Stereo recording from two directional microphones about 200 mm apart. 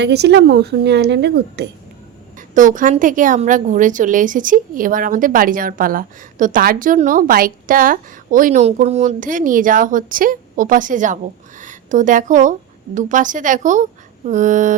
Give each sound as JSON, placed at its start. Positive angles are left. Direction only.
{"t": 0.0, "sound": "speech", "side_deg": -55}
{"t": 2.6, "sound": "a woman's voice", "side_deg": -40}